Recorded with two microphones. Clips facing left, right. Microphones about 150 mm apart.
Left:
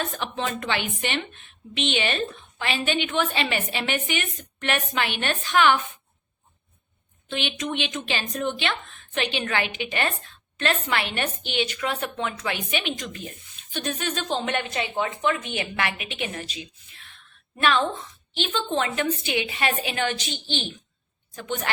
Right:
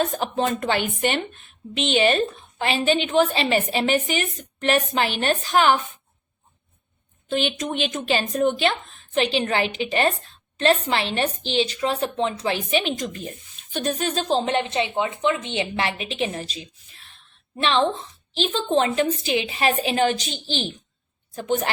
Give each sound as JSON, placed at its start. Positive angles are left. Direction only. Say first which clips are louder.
{"t": 0.0, "sound": "a woman's voice", "louder": "right 6 dB", "side_deg": -40}
{"t": 7.3, "sound": "a woman's voice", "louder": "right 5 dB", "side_deg": -40}